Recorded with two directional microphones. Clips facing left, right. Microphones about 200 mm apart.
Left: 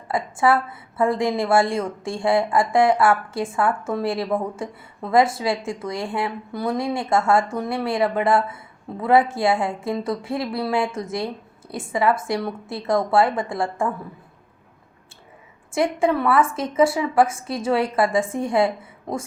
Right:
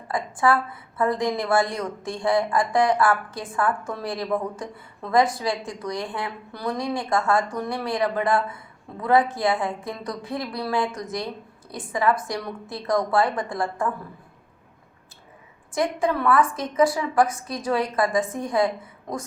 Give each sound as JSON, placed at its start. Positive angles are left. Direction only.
{"t": 0.1, "sound": "a woman's voice", "side_deg": 25}
{"t": 15.7, "sound": "a woman's voice", "side_deg": 25}